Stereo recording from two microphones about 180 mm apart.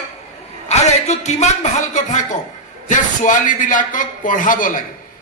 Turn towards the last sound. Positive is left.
turn(degrees=50)  # may be behind; listen again after turning